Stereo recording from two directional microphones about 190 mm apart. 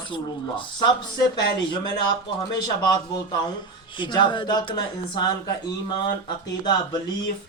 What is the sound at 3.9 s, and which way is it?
Speech, 25° left (ahead or behind).